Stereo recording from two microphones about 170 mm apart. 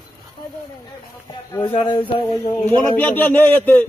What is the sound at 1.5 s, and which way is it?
Speech, 25° left (ahead or behind).